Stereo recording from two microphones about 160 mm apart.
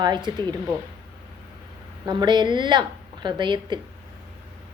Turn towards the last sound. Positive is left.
turn(degrees=-30)  # may be behind; listen again after turning